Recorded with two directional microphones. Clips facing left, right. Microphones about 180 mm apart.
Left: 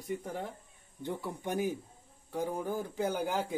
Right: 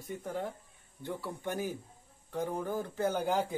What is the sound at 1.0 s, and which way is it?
Speech, 15° left (ahead or behind).